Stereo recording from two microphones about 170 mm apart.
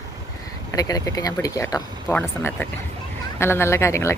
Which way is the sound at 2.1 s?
10° left (ahead or behind).